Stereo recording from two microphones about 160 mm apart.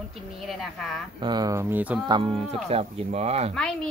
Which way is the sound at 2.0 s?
30° right (ahead or behind).